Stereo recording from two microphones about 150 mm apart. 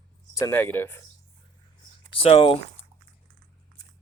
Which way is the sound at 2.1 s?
40° left (ahead or behind).